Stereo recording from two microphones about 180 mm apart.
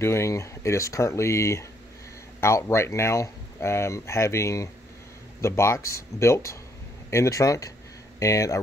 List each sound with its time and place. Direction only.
0.0 s speech: 15° left (ahead or behind)